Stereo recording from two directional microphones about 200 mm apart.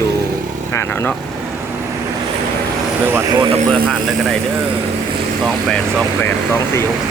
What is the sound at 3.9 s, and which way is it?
Speech, centre (ahead or behind).